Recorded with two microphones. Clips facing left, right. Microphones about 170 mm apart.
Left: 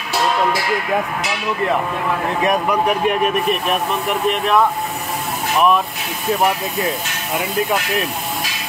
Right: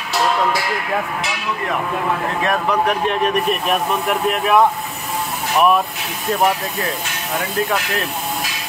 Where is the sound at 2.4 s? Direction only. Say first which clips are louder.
Left 1 dB; 15° left (ahead or behind); by 4.6 s 5° right (ahead or behind).